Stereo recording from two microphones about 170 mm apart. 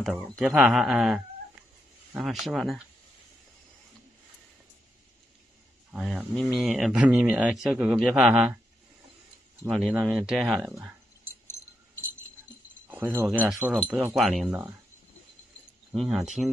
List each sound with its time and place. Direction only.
0.0 s speech: centre (ahead or behind)
5.9 s speech: centre (ahead or behind)
9.7 s speech: 5° right (ahead or behind)
10.7 s a sound: 15° right (ahead or behind)
11.4 s a sound: 15° left (ahead or behind)
12.8 s speech: 15° right (ahead or behind)
15.9 s speech: centre (ahead or behind)